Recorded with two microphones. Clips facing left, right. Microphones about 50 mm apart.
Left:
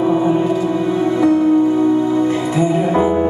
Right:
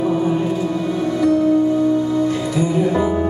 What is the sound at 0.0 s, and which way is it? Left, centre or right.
Music, left.